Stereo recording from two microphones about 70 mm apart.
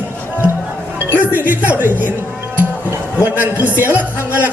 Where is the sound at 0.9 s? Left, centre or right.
Right.